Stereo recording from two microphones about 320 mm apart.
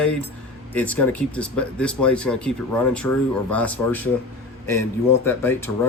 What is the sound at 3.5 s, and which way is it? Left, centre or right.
Speech, centre.